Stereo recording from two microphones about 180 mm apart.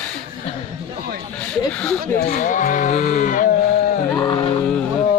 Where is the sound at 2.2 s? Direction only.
45° left (ahead or behind).